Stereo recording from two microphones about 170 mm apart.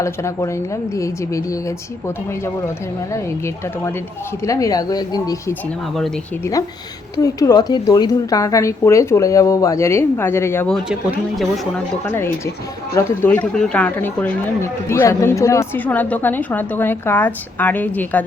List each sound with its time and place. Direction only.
0.0 s speech: 15° left (ahead or behind)
12.0 s speech: 15° left (ahead or behind)